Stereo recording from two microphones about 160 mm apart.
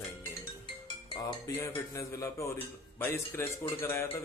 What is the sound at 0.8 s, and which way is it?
Music, 25° left (ahead or behind).